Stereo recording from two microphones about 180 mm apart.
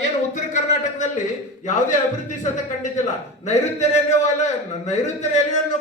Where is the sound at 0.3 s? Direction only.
40° left (ahead or behind).